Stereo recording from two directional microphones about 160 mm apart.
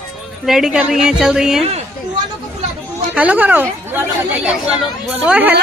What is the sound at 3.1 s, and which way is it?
Speech, 10° right (ahead or behind).